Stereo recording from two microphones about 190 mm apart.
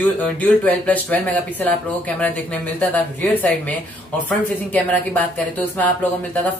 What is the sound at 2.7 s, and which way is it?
Speech, 10° left (ahead or behind).